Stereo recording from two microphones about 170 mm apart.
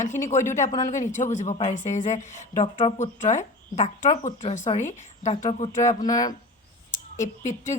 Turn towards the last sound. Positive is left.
turn(degrees=45)  # may be behind; listen again after turning